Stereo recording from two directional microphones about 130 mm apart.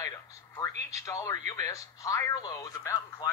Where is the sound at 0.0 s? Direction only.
25° left (ahead or behind).